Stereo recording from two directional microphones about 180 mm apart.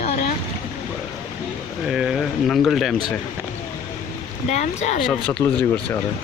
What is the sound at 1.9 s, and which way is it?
Speech, centre (ahead or behind).